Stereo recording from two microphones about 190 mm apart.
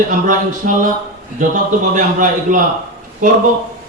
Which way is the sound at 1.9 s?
40° right (ahead or behind).